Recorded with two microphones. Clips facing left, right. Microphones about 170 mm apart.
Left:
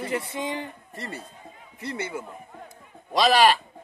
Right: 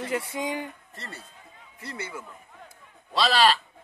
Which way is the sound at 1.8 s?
25° left (ahead or behind).